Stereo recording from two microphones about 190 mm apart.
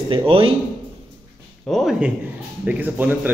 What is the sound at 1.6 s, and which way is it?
Speech, centre (ahead or behind).